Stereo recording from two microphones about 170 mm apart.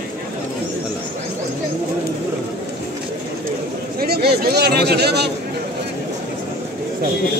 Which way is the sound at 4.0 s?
65° right (ahead or behind).